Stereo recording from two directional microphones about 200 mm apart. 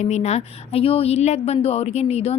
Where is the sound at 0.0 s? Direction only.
35° left (ahead or behind).